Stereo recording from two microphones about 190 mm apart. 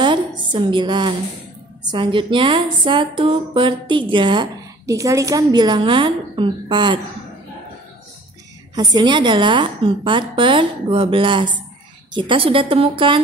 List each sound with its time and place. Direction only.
0.0 s a sound: 25° right (ahead or behind)
1.9 s a woman's voice: 25° right (ahead or behind)
8.7 s a woman's voice: 25° right (ahead or behind)